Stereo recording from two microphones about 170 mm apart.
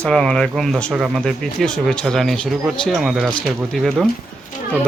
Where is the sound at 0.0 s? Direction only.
5° left (ahead or behind).